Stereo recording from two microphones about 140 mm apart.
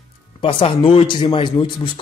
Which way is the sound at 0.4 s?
40° left (ahead or behind).